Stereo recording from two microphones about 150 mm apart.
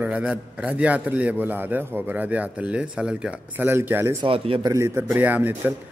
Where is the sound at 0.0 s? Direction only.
5° right (ahead or behind).